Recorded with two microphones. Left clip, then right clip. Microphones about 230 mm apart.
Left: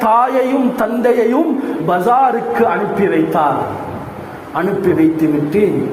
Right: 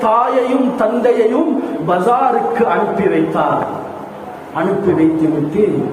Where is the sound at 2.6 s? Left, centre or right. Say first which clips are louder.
Even; left.